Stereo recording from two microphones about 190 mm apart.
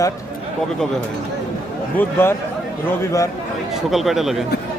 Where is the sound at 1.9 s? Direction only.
10° left (ahead or behind).